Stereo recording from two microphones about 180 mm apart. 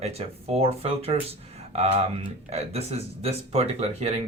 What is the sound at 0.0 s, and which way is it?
Speech, 35° right (ahead or behind).